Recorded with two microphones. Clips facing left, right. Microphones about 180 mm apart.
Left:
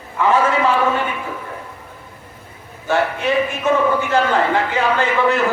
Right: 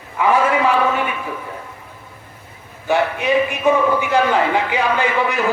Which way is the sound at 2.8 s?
15° right (ahead or behind).